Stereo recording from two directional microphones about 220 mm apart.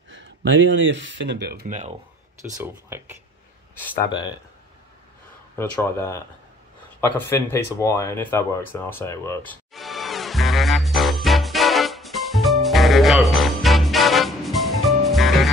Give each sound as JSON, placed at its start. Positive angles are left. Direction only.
{"t": 0.1, "sound": "speech", "side_deg": -55}
{"t": 1.7, "sound": "speech", "side_deg": -30}
{"t": 2.5, "sound": "speech", "side_deg": -10}
{"t": 3.7, "sound": "speech", "side_deg": 10}
{"t": 4.1, "sound": "speech", "side_deg": 20}
{"t": 5.6, "sound": "speech", "side_deg": 10}
{"t": 7.0, "sound": "a sound", "side_deg": 10}